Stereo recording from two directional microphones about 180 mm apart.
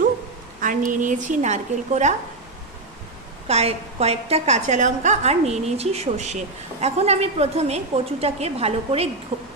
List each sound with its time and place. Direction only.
0.6 s a woman's voice: 50° right (ahead or behind)
3.4 s a woman's voice: 35° right (ahead or behind)